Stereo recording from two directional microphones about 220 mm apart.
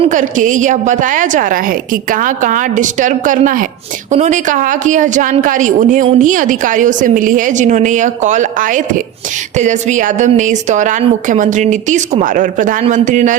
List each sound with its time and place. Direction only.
0.0 s a woman's voice: 35° right (ahead or behind)